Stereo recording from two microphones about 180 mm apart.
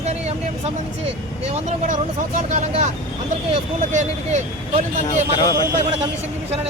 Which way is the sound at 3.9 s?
40° right (ahead or behind).